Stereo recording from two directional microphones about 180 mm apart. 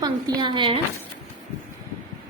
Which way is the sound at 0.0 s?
25° right (ahead or behind).